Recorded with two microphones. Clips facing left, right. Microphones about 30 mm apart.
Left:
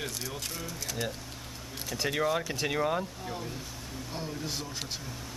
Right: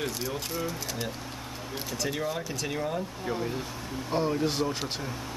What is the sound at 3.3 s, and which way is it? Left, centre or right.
Speech, right.